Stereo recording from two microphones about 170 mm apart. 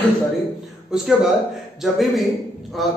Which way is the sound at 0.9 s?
Centre (ahead or behind).